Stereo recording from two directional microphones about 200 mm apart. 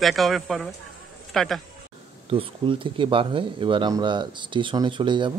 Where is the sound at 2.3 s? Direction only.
25° right (ahead or behind).